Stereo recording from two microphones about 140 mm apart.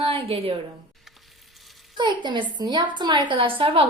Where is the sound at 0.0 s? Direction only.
40° right (ahead or behind).